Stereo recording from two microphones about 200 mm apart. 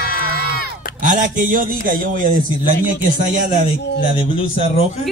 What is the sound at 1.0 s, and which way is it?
A man's voice, 40° right (ahead or behind).